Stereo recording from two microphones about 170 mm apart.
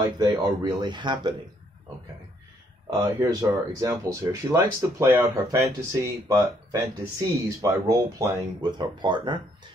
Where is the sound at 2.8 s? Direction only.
20° right (ahead or behind).